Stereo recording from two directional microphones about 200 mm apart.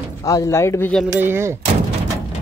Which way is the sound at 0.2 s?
15° left (ahead or behind).